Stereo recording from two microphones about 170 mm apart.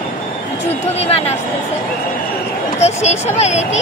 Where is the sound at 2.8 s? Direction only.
40° left (ahead or behind).